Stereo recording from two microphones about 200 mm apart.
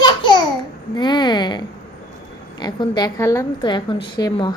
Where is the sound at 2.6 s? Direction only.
20° left (ahead or behind).